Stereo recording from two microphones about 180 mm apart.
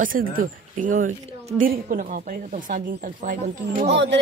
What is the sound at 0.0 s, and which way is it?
Speech, 50° right (ahead or behind).